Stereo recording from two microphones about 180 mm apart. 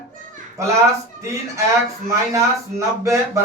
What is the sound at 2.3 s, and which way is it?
Speech, 15° right (ahead or behind).